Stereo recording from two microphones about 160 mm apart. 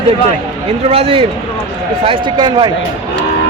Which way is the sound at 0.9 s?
40° right (ahead or behind).